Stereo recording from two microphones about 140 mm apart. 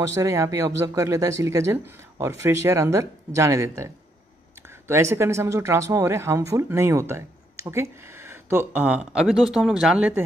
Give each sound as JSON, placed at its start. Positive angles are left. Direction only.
{"t": 0.0, "sound": "speech", "side_deg": -20}